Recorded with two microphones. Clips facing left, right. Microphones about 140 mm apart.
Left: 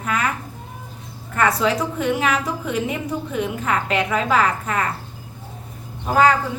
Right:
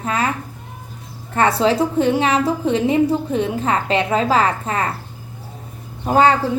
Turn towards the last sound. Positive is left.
turn(degrees=-30)  # may be behind; listen again after turning